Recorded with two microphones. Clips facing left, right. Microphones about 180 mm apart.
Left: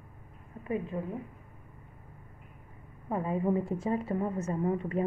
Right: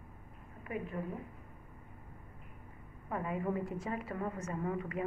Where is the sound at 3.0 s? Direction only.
30° left (ahead or behind).